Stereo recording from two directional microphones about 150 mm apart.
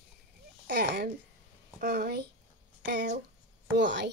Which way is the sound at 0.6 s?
90° right.